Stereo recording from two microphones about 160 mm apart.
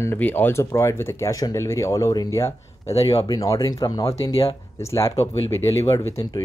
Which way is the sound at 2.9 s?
40° left (ahead or behind).